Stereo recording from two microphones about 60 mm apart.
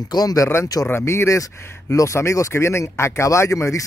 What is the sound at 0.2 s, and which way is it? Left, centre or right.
Speech, left.